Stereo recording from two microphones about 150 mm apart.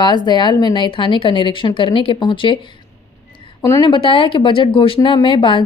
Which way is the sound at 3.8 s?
35° left (ahead or behind).